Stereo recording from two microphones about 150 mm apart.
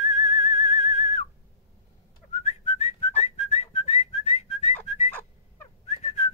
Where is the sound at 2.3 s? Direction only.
45° left (ahead or behind).